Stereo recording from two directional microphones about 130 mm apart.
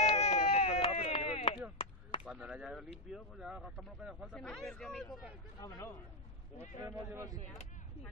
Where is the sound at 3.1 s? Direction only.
5° right (ahead or behind).